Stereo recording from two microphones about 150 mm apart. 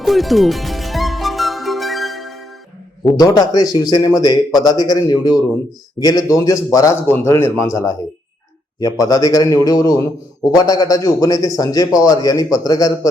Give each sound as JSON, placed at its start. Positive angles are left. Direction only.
{"t": 0.0, "sound": "music", "side_deg": 0}
{"t": 3.2, "sound": "a man's voice", "side_deg": 25}